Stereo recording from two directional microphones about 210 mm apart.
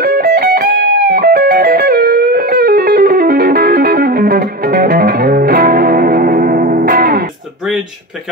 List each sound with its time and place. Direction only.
0.0 s music: 45° right (ahead or behind)